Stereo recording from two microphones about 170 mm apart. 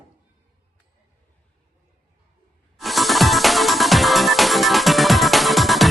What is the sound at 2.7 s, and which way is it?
Music, centre (ahead or behind).